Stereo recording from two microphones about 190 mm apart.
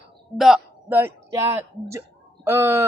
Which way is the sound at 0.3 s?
Centre (ahead or behind).